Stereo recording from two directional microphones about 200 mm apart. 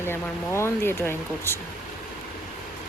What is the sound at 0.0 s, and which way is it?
Speech, 10° left (ahead or behind).